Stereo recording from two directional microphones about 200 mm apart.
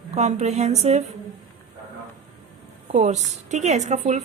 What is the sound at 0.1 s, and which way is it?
Speech, 35° right (ahead or behind).